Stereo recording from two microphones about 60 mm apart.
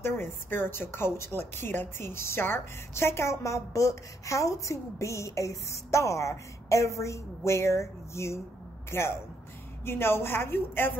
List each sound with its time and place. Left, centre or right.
0.0 s a woman's voice: left